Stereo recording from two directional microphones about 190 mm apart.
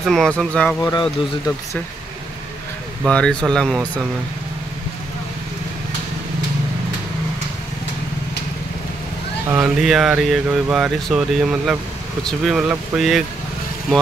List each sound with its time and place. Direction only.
0.0 s speech: centre (ahead or behind)
0.7 s speech: 15° left (ahead or behind)
3.1 s speech: 5° left (ahead or behind)
9.5 s speech: 5° right (ahead or behind)